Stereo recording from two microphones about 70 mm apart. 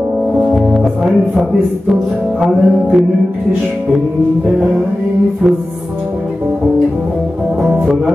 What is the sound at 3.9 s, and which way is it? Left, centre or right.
Mantra, centre.